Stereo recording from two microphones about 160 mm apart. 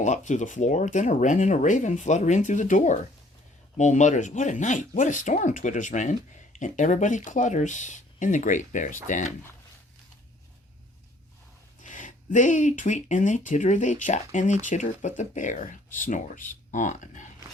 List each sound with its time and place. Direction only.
0.0 s speech: 50° left (ahead or behind)
11.8 s speech: 55° left (ahead or behind)